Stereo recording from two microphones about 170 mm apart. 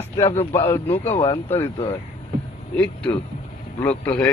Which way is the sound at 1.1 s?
35° left (ahead or behind).